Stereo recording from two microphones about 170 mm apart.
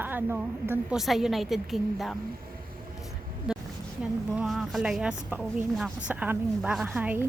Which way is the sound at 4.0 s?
5° right (ahead or behind).